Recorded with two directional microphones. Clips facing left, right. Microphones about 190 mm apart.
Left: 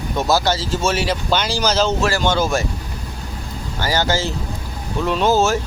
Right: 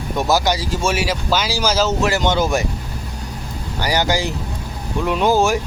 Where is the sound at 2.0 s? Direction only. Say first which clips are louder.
Right 1 dB; 20° right (ahead or behind).